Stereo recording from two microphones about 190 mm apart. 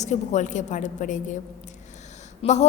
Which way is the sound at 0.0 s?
40° left (ahead or behind).